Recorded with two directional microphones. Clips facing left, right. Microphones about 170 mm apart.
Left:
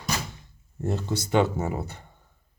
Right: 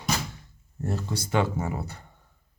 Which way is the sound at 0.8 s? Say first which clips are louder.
Left 3 dB; 20° left (ahead or behind).